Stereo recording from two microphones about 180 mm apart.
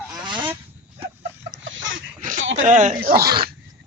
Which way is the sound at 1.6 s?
90° right.